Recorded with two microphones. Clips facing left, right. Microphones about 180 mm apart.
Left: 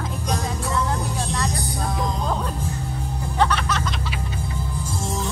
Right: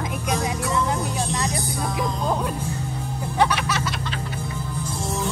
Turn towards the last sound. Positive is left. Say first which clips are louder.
# even
turn(degrees=-10)  # may be behind; listen again after turning